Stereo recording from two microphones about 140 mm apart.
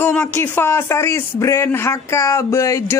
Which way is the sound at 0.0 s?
15° left (ahead or behind).